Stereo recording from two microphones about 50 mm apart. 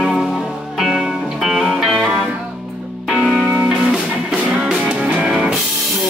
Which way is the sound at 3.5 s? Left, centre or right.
Right.